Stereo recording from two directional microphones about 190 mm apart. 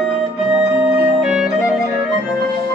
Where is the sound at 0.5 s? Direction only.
5° right (ahead or behind).